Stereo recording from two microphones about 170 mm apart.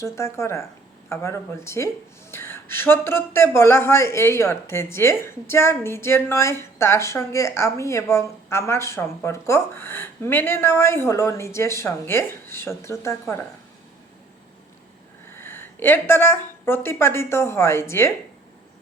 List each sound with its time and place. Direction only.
0.0 s speech: 15° left (ahead or behind)
15.3 s a woman's voice: 15° left (ahead or behind)